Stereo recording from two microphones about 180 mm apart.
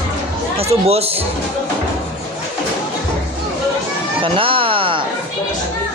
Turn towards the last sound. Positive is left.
turn(degrees=-30)  # may be behind; listen again after turning